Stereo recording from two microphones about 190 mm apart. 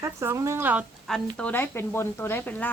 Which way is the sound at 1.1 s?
5° left (ahead or behind).